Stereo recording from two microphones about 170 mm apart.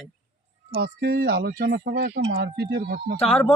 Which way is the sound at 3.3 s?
5° left (ahead or behind).